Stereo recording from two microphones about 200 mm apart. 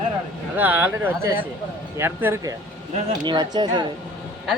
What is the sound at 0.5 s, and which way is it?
Speech, 10° right (ahead or behind).